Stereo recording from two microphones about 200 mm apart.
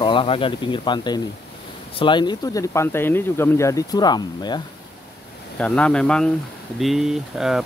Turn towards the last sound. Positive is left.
turn(degrees=0)  # may be behind; listen again after turning